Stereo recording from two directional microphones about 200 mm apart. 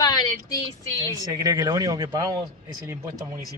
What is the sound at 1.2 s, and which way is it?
Speech, 20° right (ahead or behind).